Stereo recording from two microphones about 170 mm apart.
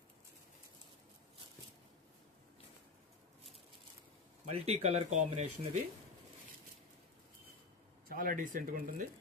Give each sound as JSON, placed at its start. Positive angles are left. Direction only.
{"t": 4.4, "sound": "speech", "side_deg": -40}
{"t": 8.0, "sound": "speech", "side_deg": -55}